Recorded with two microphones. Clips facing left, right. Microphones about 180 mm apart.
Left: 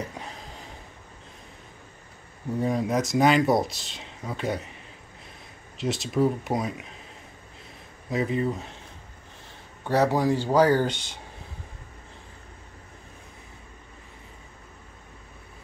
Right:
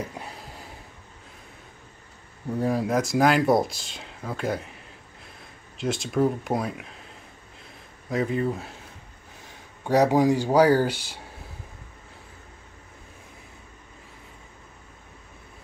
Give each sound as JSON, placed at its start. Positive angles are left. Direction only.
{"t": 0.1, "sound": "a sound", "side_deg": -5}
{"t": 2.6, "sound": "speech", "side_deg": -5}
{"t": 5.8, "sound": "speech", "side_deg": 0}
{"t": 8.1, "sound": "speech", "side_deg": 0}
{"t": 9.8, "sound": "speech", "side_deg": -15}